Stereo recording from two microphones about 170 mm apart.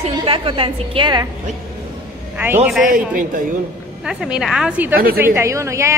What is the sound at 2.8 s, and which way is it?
Speech, 55° right (ahead or behind).